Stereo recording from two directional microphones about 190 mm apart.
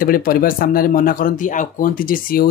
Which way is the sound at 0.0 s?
50° left (ahead or behind).